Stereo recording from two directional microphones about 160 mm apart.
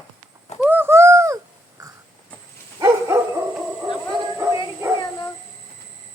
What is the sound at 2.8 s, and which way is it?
Dog, 20° right (ahead or behind).